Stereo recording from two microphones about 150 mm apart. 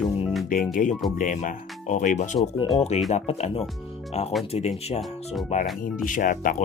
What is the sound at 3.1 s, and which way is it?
Speech, 45° left (ahead or behind).